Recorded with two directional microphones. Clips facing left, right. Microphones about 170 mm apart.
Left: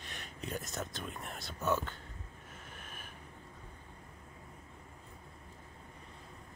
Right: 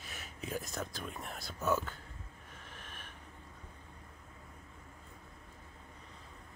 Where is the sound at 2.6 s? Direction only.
5° left (ahead or behind).